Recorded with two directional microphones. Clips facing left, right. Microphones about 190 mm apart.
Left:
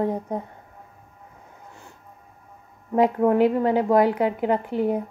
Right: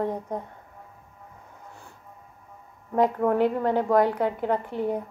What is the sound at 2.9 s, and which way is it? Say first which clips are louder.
A woman's voice: left 3 dB; 10° left (ahead or behind).